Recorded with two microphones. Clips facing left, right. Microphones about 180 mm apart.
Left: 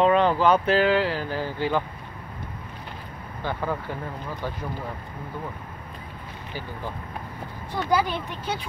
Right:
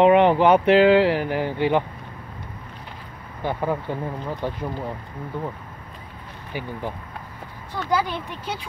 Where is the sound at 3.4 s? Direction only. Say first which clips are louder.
Right 4 dB; 20° right (ahead or behind).